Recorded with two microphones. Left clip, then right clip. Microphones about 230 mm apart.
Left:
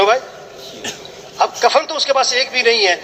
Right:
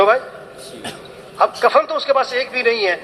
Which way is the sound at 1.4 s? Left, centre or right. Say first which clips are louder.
Even; left.